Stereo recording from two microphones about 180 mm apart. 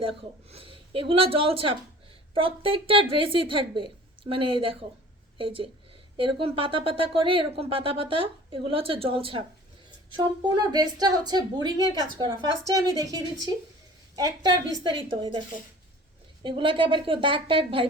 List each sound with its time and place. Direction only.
0.5 s a woman's voice: 30° right (ahead or behind)